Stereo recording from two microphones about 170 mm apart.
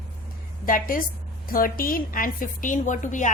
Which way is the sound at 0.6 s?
55° left (ahead or behind).